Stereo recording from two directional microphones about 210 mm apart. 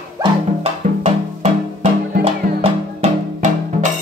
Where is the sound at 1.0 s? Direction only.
30° right (ahead or behind).